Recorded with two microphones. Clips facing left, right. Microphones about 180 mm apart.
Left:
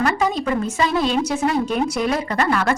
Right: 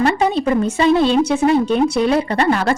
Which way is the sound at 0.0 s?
30° right (ahead or behind).